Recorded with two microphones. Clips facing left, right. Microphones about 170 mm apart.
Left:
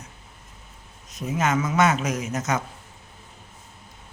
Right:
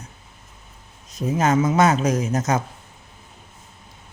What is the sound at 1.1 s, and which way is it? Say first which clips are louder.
A man's voice: right 5 dB; 35° right (ahead or behind).